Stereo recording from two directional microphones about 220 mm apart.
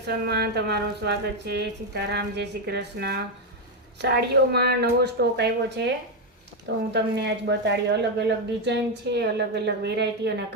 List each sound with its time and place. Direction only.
0.0 s a woman's voice: 50° right (ahead or behind)
6.9 s a woman's voice: 50° right (ahead or behind)